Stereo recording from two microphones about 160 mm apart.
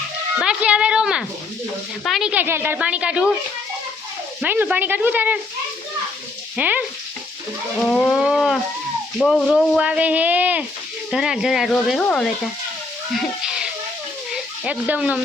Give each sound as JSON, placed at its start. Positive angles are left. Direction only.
{"t": 0.3, "sound": "a sound", "side_deg": -5}
{"t": 2.0, "sound": "speech", "side_deg": 0}
{"t": 4.4, "sound": "speech", "side_deg": -10}
{"t": 6.6, "sound": "speech", "side_deg": -10}
{"t": 7.8, "sound": "speech", "side_deg": 5}
{"t": 13.1, "sound": "a sound", "side_deg": -5}
{"t": 14.3, "sound": "speech", "side_deg": -5}